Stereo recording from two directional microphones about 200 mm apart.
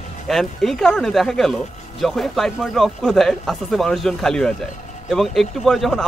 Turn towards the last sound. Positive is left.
turn(degrees=0)  # may be behind; listen again after turning